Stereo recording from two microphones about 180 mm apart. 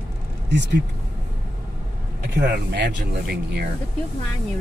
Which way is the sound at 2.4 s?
65° right (ahead or behind).